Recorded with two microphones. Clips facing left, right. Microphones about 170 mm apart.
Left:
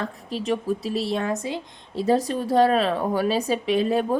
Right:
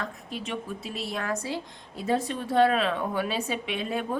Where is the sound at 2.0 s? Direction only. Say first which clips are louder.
Left 6 dB; 35° left (ahead or behind).